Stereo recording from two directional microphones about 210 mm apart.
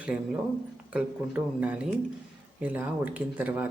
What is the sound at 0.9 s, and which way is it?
Speech, 5° right (ahead or behind).